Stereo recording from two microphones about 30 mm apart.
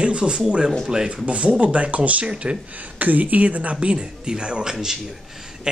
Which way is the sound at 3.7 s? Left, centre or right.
Right.